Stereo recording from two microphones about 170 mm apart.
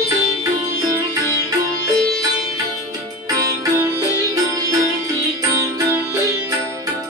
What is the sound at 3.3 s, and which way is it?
Music, 20° right (ahead or behind).